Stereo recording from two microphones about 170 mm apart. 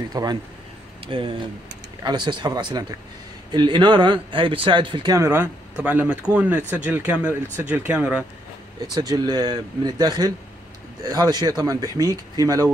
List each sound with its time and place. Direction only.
0.1 s speech: 25° right (ahead or behind); by 8.3 s 5° right (ahead or behind)
8.8 s speech: 25° right (ahead or behind)